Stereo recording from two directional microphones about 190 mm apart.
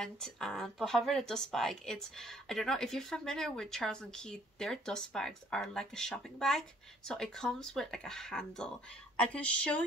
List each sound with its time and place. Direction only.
0.0 s speech: 5° left (ahead or behind)